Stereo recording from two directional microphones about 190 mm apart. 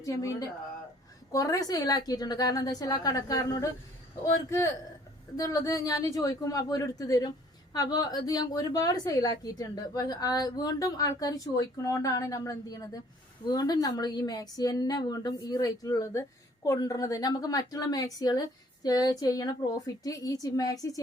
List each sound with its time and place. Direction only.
0.0 s a woman's voice: 15° left (ahead or behind)
5.4 s a woman's voice: 20° left (ahead or behind)